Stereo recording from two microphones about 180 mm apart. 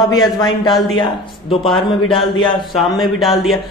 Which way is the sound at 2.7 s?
Centre (ahead or behind).